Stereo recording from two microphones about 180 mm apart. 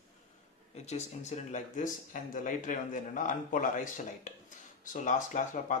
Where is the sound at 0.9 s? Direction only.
40° left (ahead or behind).